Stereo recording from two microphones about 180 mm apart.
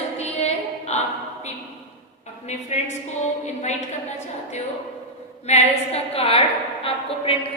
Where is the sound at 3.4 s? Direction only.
40° left (ahead or behind).